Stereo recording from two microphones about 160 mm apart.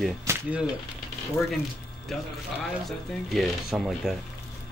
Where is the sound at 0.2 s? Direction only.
15° right (ahead or behind).